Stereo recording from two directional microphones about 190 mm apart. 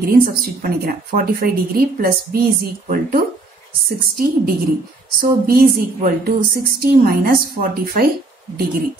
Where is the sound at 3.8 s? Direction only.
50° right (ahead or behind).